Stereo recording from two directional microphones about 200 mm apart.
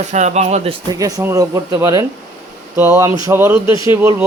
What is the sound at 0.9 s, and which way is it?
Speech, 15° right (ahead or behind).